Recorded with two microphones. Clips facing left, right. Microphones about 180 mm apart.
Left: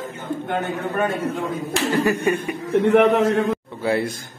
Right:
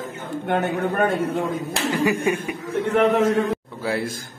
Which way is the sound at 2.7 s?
65° left (ahead or behind).